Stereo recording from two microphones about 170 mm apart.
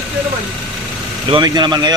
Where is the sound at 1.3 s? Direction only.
25° right (ahead or behind).